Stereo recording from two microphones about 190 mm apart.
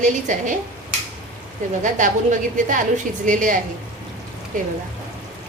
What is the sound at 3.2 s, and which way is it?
Speech, 45° right (ahead or behind).